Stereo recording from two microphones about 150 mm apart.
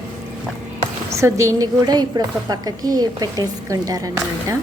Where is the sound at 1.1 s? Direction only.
20° right (ahead or behind).